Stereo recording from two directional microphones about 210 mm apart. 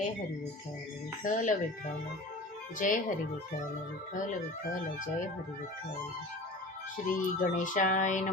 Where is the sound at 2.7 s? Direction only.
40° left (ahead or behind).